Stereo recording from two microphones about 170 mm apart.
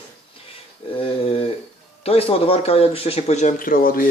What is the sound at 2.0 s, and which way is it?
Speech, 35° left (ahead or behind).